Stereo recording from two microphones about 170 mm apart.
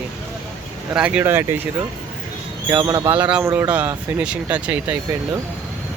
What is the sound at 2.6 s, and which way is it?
Speech, 20° right (ahead or behind).